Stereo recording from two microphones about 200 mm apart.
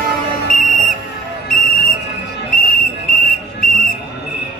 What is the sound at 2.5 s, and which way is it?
Whistle, 45° left (ahead or behind).